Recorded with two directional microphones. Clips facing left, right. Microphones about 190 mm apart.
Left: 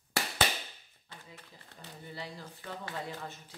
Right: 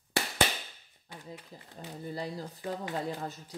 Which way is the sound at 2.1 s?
40° right (ahead or behind).